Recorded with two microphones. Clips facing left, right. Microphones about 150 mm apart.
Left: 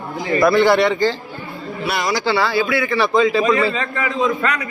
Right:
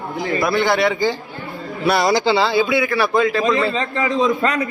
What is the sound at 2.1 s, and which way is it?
Speech, 20° right (ahead or behind).